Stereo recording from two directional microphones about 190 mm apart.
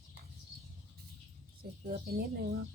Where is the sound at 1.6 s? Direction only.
50° right (ahead or behind).